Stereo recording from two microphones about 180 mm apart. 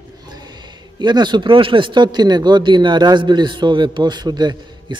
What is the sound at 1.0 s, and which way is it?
Speech, 25° right (ahead or behind).